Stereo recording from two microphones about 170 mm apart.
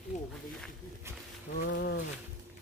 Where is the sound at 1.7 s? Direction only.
80° left.